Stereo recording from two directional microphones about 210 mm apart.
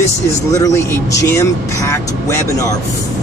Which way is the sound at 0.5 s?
15° left (ahead or behind).